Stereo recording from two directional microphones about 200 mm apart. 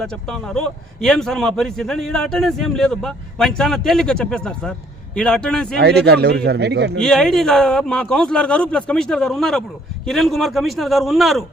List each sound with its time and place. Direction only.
0.0 s a man's voice: 5° left (ahead or behind)
5.7 s speech: 55° right (ahead or behind)
7.0 s a man's voice: 5° left (ahead or behind)